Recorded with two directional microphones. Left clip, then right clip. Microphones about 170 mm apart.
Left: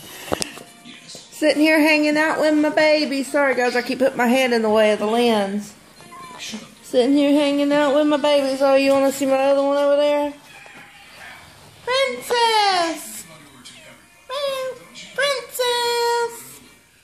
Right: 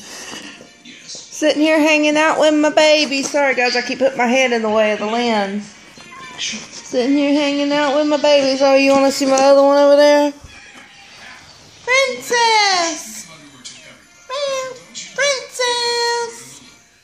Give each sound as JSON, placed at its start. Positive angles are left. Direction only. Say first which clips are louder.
{"t": 1.4, "sound": "a woman's voice", "louder": "right 2 dB", "side_deg": -5}
{"t": 2.2, "sound": "speech", "louder": "right 5 dB", "side_deg": -15}
{"t": 2.7, "sound": "speech", "louder": "right 4 dB", "side_deg": -90}
{"t": 3.3, "sound": "speech", "louder": "right 2 dB", "side_deg": -5}
{"t": 6.9, "sound": "a sound", "louder": "even", "side_deg": -30}
{"t": 8.3, "sound": "a sound", "louder": "right 7 dB", "side_deg": -35}
{"t": 11.8, "sound": "a child's voice", "louder": "right 5 dB", "side_deg": 0}
{"t": 14.2, "sound": "music", "louder": "right 3 dB", "side_deg": 5}
{"t": 15.1, "sound": "child singing", "louder": "right 3 dB", "side_deg": 5}